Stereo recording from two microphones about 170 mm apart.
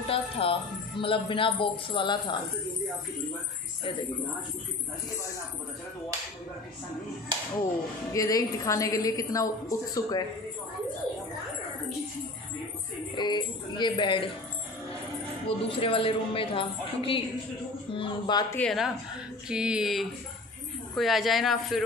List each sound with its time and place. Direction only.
0.1 s music: 35° left (ahead or behind)
1.0 s a woman's voice: 30° left (ahead or behind)
8.1 s a woman's voice: 20° left (ahead or behind)
13.1 s a woman's voice: 25° left (ahead or behind)
15.4 s a woman's voice: 30° left (ahead or behind)
18.5 s speech: 5° left (ahead or behind)